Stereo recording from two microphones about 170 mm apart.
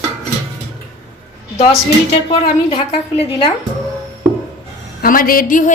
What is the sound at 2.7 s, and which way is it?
Speech, 30° left (ahead or behind).